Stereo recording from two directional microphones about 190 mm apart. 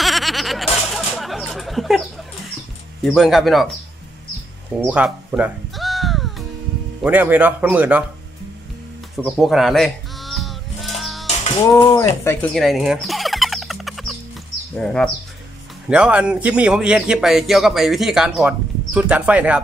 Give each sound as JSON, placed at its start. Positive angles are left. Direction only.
{"t": 0.0, "sound": "a sound", "side_deg": 0}
{"t": 3.0, "sound": "a man's voice", "side_deg": 0}
{"t": 4.7, "sound": "music", "side_deg": -5}
{"t": 7.0, "sound": "speech", "side_deg": -10}
{"t": 9.1, "sound": "bird", "side_deg": 0}
{"t": 11.7, "sound": "speech", "side_deg": 20}
{"t": 12.3, "sound": "a sound", "side_deg": 5}
{"t": 14.8, "sound": "a man's voice", "side_deg": 0}